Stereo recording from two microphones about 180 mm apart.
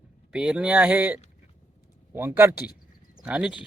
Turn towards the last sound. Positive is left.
turn(degrees=-5)  # may be behind; listen again after turning